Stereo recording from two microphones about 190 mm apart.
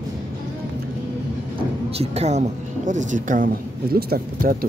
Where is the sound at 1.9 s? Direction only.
35° right (ahead or behind).